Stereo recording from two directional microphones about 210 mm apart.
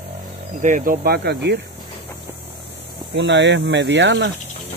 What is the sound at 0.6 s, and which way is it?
Speech, 35° right (ahead or behind).